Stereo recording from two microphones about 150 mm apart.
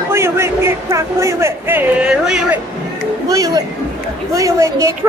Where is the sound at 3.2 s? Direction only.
20° right (ahead or behind).